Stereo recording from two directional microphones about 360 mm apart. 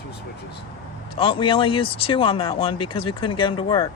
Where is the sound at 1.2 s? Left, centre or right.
Centre.